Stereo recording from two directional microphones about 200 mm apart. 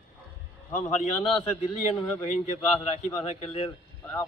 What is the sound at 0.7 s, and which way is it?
Speech, 35° left (ahead or behind).